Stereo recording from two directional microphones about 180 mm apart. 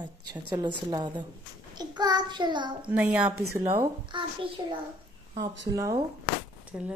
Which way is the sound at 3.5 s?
15° right (ahead or behind).